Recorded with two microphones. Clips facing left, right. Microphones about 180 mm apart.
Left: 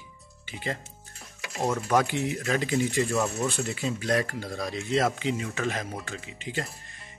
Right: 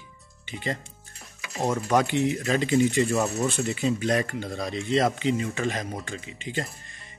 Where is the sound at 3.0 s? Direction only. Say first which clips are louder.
Right 2 dB; 20° right (ahead or behind).